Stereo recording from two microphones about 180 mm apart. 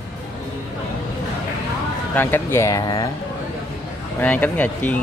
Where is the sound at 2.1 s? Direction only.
10° left (ahead or behind).